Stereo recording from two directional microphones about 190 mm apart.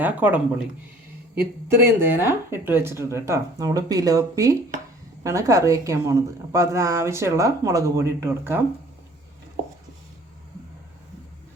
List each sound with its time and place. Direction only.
0.0 s a woman's voice: 10° right (ahead or behind)